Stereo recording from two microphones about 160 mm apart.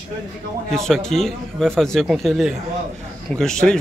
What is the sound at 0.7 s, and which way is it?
Speech, centre (ahead or behind).